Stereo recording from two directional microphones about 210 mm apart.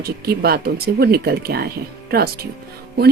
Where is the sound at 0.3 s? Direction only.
45° right (ahead or behind).